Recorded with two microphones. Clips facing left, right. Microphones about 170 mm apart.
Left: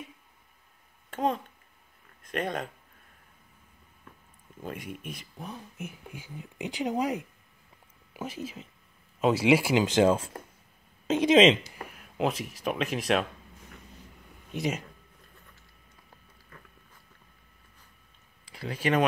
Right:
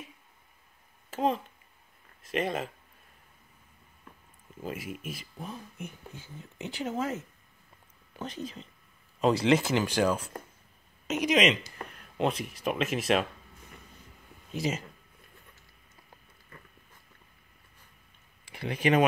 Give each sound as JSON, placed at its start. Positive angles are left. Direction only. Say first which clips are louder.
{"t": 1.1, "sound": "speech", "louder": "even", "side_deg": -5}
{"t": 4.6, "sound": "speech", "louder": "right 1 dB", "side_deg": -5}
{"t": 11.7, "sound": "speech", "louder": "even", "side_deg": 5}
{"t": 14.6, "sound": "speech", "louder": "left 1 dB", "side_deg": 0}
{"t": 18.4, "sound": "speech", "louder": "right 2 dB", "side_deg": -20}